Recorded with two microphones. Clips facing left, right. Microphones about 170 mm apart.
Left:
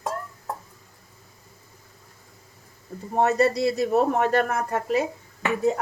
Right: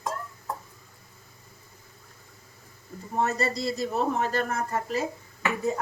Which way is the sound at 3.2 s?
65° left (ahead or behind).